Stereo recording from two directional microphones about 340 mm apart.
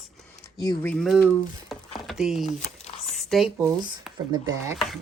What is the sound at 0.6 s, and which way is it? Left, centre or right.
Speech, centre.